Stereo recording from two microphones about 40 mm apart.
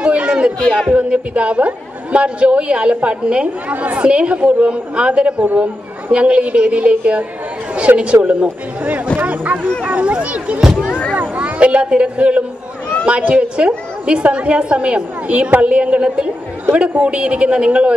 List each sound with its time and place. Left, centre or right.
0.0 s chatter: right
0.6 s speech: left
0.9 s a woman's voice: right
3.6 s a woman's voice: right
5.4 s speech: right
6.1 s a woman's voice: right
10.6 s speech: centre
11.3 s a woman's voice: right